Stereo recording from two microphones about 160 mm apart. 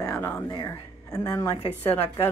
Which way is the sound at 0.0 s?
15° left (ahead or behind).